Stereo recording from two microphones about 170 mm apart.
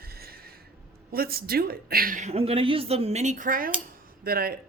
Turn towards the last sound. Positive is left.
turn(degrees=-60)  # may be behind; listen again after turning